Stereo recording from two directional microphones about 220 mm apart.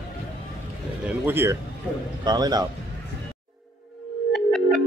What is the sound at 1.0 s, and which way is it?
Speech, 10° right (ahead or behind).